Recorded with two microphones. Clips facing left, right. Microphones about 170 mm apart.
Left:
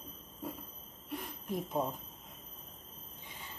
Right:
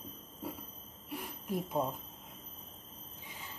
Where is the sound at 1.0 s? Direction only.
5° right (ahead or behind).